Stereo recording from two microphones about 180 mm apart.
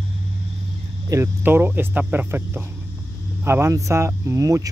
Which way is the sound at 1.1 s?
15° right (ahead or behind).